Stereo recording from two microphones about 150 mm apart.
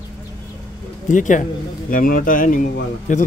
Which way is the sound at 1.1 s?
55° left (ahead or behind).